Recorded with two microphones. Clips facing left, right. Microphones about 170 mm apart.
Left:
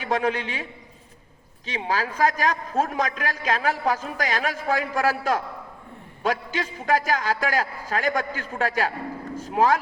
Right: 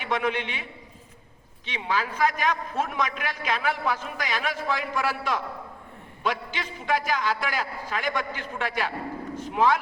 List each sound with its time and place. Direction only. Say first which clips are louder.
0.0 s a man's voice: left 3 dB; 40° left (ahead or behind)